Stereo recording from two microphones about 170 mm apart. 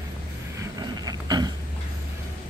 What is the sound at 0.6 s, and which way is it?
Burping, 25° right (ahead or behind).